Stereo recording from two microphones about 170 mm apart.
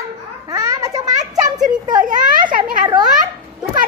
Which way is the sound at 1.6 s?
50° right (ahead or behind).